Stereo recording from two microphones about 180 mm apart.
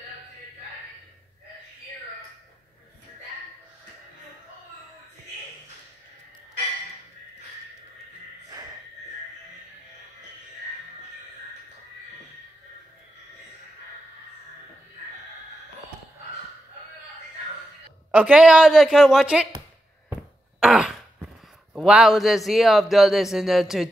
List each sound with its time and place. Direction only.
8.5 s a sound: 20° right (ahead or behind)
18.1 s a man's voice: 5° right (ahead or behind)
20.6 s throat clearing: 5° right (ahead or behind)
21.7 s a man's voice: 5° right (ahead or behind)